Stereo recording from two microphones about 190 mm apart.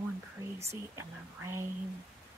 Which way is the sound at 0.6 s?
15° right (ahead or behind).